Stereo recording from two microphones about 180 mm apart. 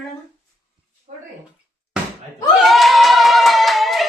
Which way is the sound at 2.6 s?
Centre (ahead or behind).